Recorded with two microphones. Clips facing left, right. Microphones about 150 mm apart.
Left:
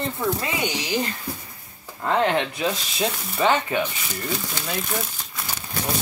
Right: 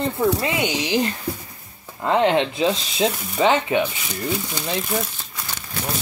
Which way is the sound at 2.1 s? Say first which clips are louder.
Right 3 dB; 20° right (ahead or behind).